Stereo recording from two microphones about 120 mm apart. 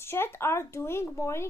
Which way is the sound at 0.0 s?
20° left (ahead or behind).